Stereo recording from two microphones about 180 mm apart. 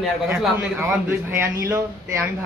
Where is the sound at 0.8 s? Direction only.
15° right (ahead or behind).